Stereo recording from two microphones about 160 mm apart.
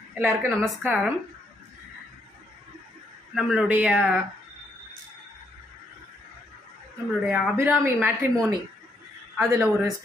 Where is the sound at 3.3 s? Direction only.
Centre (ahead or behind).